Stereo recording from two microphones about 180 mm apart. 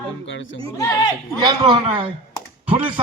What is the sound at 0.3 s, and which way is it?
Speech, 90° left.